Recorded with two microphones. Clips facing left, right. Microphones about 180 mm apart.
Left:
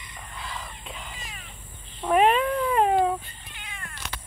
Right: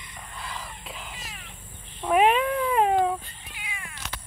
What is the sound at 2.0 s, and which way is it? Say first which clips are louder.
Cat: even; 5° right (ahead or behind).